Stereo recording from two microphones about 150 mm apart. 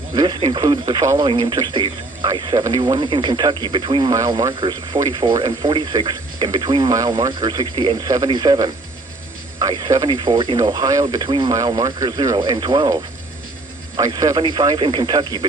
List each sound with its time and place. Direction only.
0.2 s speech: 30° right (ahead or behind)
4.1 s speech: 25° right (ahead or behind)